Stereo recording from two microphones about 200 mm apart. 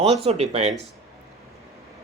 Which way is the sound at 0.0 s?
30° right (ahead or behind).